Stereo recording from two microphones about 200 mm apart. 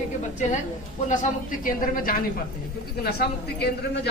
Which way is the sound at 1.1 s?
40° left (ahead or behind).